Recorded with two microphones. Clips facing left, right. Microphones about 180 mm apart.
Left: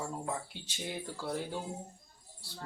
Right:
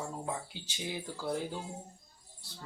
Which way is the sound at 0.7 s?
Centre (ahead or behind).